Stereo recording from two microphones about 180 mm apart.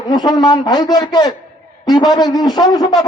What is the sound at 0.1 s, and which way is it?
A man's voice, 20° left (ahead or behind).